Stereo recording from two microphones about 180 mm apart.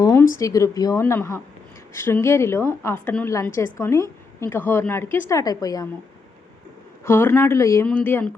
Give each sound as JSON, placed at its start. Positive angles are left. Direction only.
{"t": 0.0, "sound": "a sound", "side_deg": 15}
{"t": 0.3, "sound": "a woman's voice", "side_deg": 20}
{"t": 7.0, "sound": "a woman's voice", "side_deg": 15}